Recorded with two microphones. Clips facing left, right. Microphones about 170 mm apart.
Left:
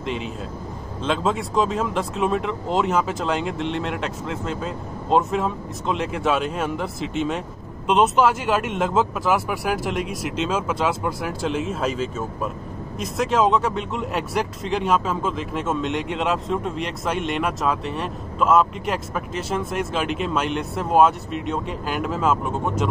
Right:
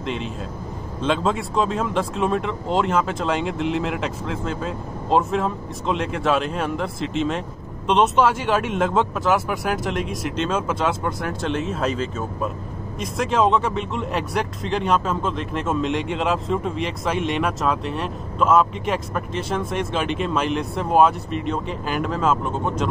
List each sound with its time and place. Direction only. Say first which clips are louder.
0.0 s speech: even; centre (ahead or behind)